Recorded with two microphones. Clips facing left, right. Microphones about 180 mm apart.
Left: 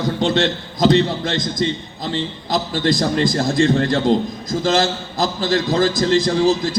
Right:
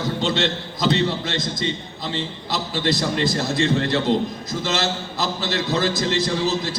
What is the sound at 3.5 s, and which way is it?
A man's voice, 45° left (ahead or behind).